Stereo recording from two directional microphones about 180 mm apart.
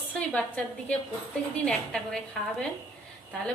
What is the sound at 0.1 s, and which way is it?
A woman's voice, 5° left (ahead or behind).